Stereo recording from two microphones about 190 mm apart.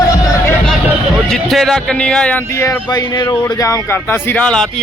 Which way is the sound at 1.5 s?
Centre (ahead or behind).